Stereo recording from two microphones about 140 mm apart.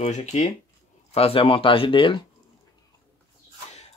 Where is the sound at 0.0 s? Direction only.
55° left (ahead or behind).